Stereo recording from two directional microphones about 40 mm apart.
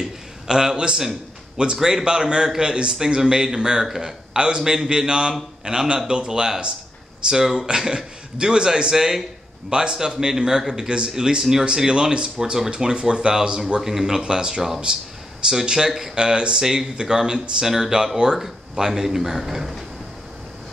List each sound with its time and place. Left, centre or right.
0.0 s a man's voice: centre
3.8 s speech: centre
4.3 s a man's voice: right
8.9 s a man's voice: centre
13.7 s a man's voice: centre